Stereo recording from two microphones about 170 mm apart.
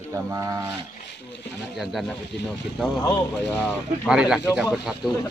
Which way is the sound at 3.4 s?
5° left (ahead or behind).